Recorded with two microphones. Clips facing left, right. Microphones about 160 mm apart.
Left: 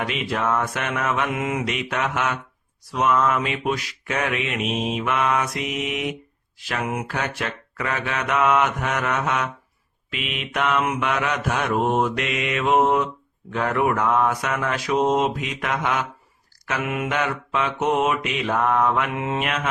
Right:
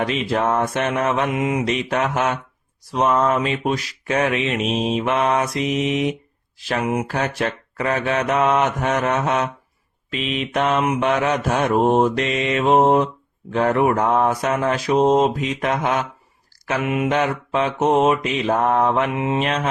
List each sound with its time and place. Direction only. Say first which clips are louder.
0.0 s mantra: right 4 dB; 35° right (ahead or behind)
16.8 s mantra: right 6 dB; 20° right (ahead or behind)
17.2 s mantra: right 4 dB; 35° right (ahead or behind)
19.1 s mantra: right 4 dB; 20° right (ahead or behind)
19.4 s mantra: right 4 dB; 30° right (ahead or behind)